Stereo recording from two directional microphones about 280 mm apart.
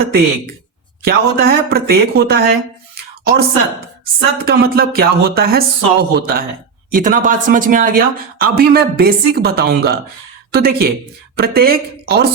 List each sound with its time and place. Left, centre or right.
1.0 s speech: right
2.9 s a sound: right
4.4 s speech: right